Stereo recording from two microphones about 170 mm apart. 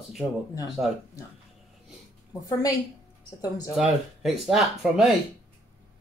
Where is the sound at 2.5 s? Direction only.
20° left (ahead or behind).